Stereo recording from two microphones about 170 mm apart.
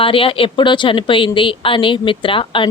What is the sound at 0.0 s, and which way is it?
Speech, 30° left (ahead or behind).